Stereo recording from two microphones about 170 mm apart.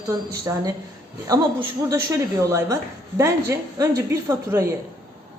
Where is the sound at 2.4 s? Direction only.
20° right (ahead or behind).